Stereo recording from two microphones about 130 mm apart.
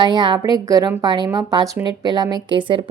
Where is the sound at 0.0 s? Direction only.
35° right (ahead or behind).